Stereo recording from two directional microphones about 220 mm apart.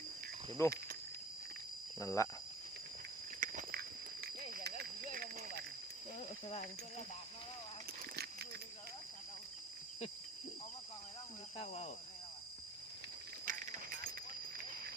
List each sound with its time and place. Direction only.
0.6 s speech: 15° left (ahead or behind)
2.0 s speech: 15° left (ahead or behind)
3.4 s cricket: 40° right (ahead or behind)
8.1 s a sound: 45° right (ahead or behind)
11.6 s speech: 30° left (ahead or behind)
13.4 s a sound: 40° right (ahead or behind)